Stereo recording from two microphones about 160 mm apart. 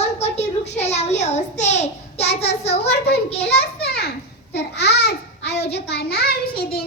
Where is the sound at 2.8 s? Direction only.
90° left.